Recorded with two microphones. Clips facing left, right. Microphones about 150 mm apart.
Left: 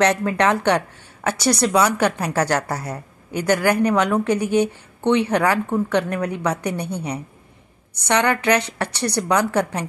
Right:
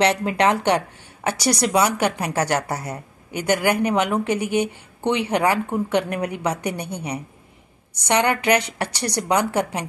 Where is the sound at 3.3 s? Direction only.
35° left (ahead or behind).